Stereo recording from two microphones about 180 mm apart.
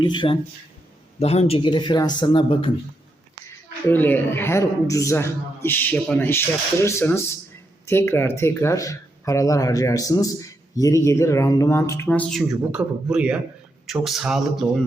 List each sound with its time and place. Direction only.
0.0 s speech: 25° left (ahead or behind)
3.8 s speech: 10° left (ahead or behind)